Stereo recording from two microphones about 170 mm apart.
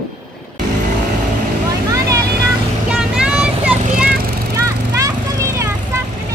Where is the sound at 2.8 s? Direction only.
5° right (ahead or behind).